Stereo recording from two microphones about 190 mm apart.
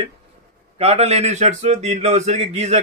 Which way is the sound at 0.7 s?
35° right (ahead or behind).